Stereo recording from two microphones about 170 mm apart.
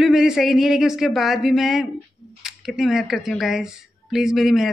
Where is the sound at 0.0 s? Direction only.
5° right (ahead or behind).